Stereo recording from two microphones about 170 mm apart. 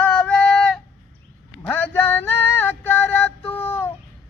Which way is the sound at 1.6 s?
10° left (ahead or behind).